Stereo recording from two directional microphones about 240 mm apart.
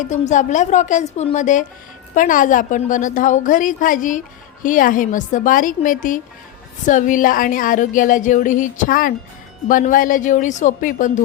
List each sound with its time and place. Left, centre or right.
0.0 s speech: left